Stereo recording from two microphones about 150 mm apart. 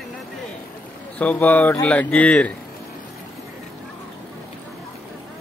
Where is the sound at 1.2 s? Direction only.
10° left (ahead or behind).